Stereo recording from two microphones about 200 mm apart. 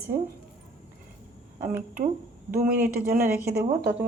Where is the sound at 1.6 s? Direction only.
10° right (ahead or behind).